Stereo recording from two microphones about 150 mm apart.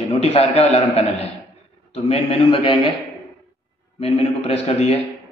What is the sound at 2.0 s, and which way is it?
Speech, 40° left (ahead or behind).